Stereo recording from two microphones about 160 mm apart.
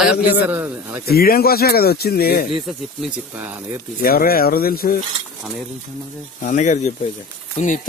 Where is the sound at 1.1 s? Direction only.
70° left (ahead or behind).